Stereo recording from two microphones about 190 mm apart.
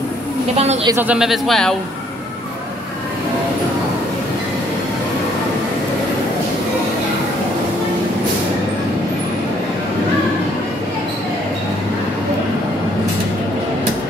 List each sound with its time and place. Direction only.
0.8 s speech: 10° right (ahead or behind)